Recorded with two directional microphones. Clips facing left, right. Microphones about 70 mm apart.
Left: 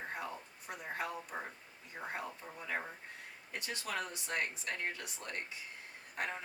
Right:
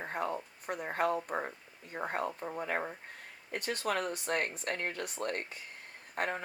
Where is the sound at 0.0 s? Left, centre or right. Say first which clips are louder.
Right 7 dB; right.